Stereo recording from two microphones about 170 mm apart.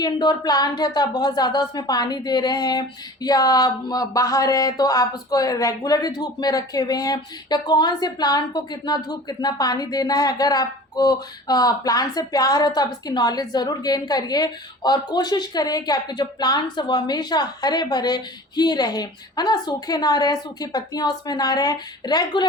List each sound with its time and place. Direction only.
0.0 s speech: 25° left (ahead or behind)